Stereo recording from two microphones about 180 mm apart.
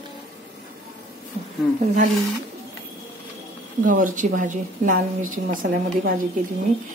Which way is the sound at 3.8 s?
50° right (ahead or behind).